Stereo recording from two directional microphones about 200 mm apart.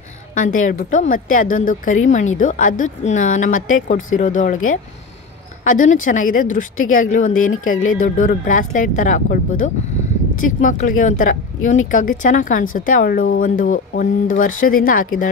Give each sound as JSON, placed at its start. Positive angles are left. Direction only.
{"t": 0.3, "sound": "speech", "side_deg": 40}
{"t": 5.6, "sound": "a woman's voice", "side_deg": 40}